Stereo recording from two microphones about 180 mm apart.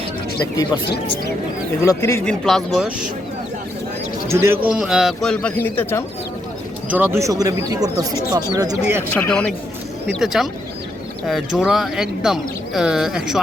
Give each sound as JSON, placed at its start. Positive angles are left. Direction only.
{"t": 1.8, "sound": "speech", "side_deg": 15}
{"t": 2.4, "sound": "speech", "side_deg": 5}
{"t": 4.3, "sound": "speech", "side_deg": -15}
{"t": 6.9, "sound": "speech", "side_deg": -10}
{"t": 8.7, "sound": "speech", "side_deg": -10}
{"t": 9.1, "sound": "speech", "side_deg": 10}